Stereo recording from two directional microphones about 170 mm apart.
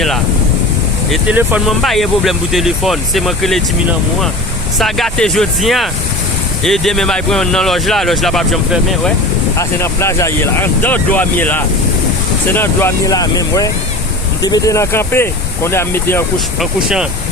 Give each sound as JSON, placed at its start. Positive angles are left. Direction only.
{"t": 1.1, "sound": "speech", "side_deg": -10}
{"t": 4.8, "sound": "speech", "side_deg": 0}
{"t": 9.6, "sound": "speech", "side_deg": 15}
{"t": 16.6, "sound": "speech", "side_deg": -5}